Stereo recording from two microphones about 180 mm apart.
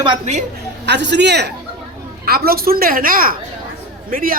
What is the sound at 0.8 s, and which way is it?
Speech, 75° right (ahead or behind).